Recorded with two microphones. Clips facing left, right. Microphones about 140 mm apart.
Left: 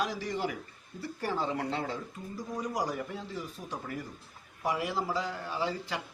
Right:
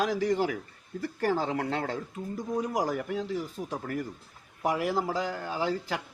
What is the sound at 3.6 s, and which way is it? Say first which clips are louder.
Speech: right 7 dB; 30° right (ahead or behind).